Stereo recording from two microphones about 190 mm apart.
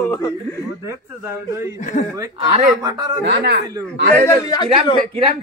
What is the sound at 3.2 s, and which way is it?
Speech, 65° right (ahead or behind).